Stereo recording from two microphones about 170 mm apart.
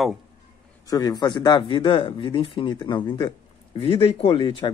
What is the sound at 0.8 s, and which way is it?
Speech, 20° left (ahead or behind).